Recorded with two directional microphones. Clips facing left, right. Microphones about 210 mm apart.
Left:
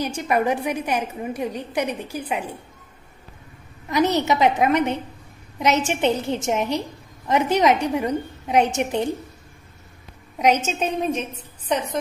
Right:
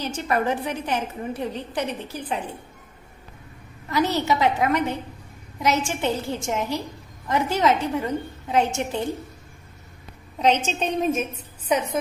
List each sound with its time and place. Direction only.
0.0 s a woman's voice: 10° left (ahead or behind)
3.9 s a woman's voice: 20° left (ahead or behind)
10.4 s a woman's voice: 10° left (ahead or behind); by 12.0 s 5° right (ahead or behind)